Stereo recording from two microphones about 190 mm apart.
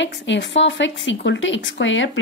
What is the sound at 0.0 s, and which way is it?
A woman's voice, 70° left (ahead or behind).